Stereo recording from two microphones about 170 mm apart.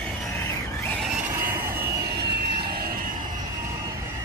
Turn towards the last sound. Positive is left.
turn(degrees=-65)  # may be behind; listen again after turning